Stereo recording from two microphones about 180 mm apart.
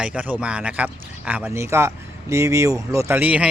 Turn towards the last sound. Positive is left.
turn(degrees=-10)  # may be behind; listen again after turning